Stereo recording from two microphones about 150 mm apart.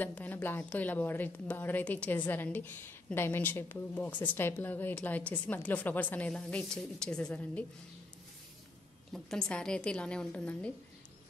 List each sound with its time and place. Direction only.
0.0 s a woman's voice: 10° left (ahead or behind)
9.1 s a woman's voice: 5° left (ahead or behind)